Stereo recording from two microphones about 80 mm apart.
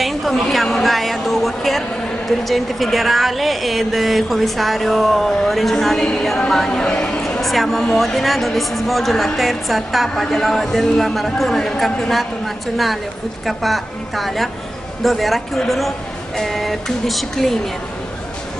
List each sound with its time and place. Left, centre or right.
0.0 s speech: centre